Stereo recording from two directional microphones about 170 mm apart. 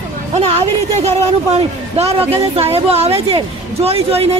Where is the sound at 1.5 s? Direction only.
35° right (ahead or behind).